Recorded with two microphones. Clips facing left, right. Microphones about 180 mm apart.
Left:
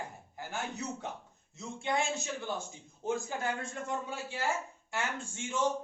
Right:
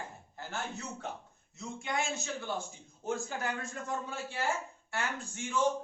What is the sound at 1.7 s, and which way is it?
Speech, 30° left (ahead or behind).